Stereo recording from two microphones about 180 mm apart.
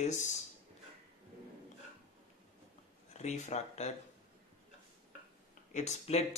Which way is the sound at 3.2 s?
40° left (ahead or behind).